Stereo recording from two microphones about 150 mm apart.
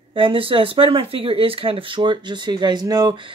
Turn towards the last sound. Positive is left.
turn(degrees=-30)  # may be behind; listen again after turning